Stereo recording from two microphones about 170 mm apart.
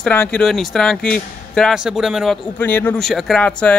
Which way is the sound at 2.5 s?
10° left (ahead or behind).